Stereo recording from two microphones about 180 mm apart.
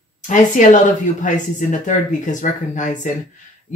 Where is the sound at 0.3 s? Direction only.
45° left (ahead or behind).